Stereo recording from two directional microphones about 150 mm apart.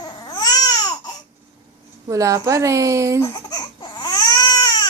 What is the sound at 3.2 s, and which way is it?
Crying, 30° left (ahead or behind).